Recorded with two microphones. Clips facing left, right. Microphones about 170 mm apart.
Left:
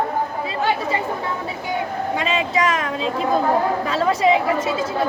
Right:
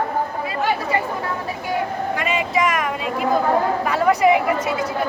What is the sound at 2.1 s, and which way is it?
Speech, 25° left (ahead or behind).